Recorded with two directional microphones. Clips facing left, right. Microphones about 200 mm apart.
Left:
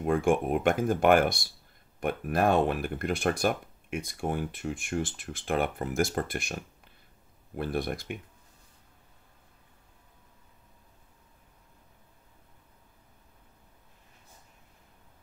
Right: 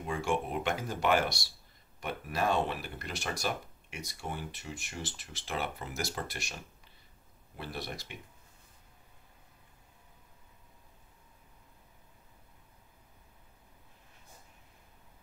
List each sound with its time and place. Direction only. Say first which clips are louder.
0.0 s speech: left 8 dB; 55° left (ahead or behind)